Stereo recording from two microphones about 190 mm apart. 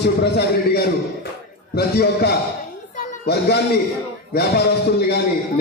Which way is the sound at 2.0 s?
55° left (ahead or behind).